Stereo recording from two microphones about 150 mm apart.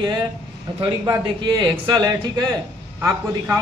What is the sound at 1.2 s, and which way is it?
Speech, 30° right (ahead or behind).